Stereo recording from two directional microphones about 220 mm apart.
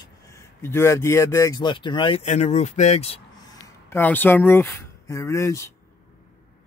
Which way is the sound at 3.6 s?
10° left (ahead or behind).